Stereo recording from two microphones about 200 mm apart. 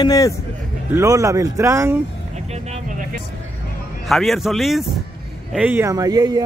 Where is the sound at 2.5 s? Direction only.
35° right (ahead or behind).